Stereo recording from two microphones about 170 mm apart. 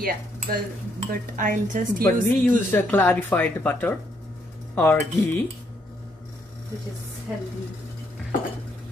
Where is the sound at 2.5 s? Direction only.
10° left (ahead or behind).